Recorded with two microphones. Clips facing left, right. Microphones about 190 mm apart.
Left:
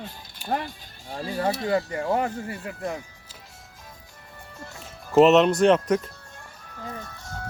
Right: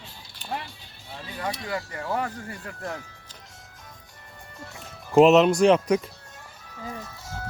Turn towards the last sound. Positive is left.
turn(degrees=-5)  # may be behind; listen again after turning